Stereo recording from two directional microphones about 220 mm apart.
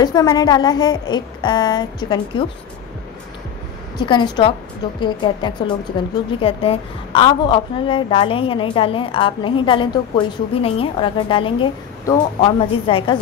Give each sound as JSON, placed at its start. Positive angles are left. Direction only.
{"t": 0.0, "sound": "a woman's voice", "side_deg": 20}
{"t": 4.0, "sound": "a woman's voice", "side_deg": 20}